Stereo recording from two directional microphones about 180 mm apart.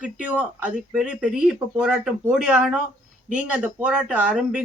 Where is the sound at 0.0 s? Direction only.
5° right (ahead or behind).